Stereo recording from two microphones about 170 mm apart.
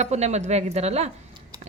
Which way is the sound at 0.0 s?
40° right (ahead or behind).